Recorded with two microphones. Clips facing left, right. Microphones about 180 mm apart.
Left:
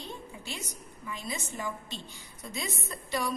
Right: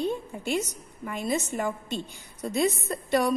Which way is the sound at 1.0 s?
55° right (ahead or behind).